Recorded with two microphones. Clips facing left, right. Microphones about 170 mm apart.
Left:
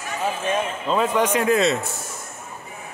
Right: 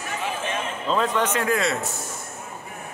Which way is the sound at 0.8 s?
10° left (ahead or behind).